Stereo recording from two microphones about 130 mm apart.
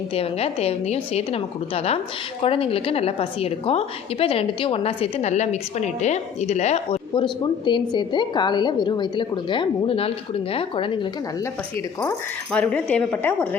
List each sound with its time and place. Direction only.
0.1 s a woman's voice: 50° left (ahead or behind)
7.1 s a woman's voice: 40° left (ahead or behind)
12.5 s speech: 10° left (ahead or behind)